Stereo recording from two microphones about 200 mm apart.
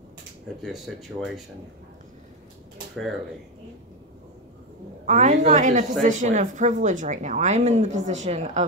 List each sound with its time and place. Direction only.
0.6 s speech: centre (ahead or behind)
5.0 s a woman's voice: 35° right (ahead or behind)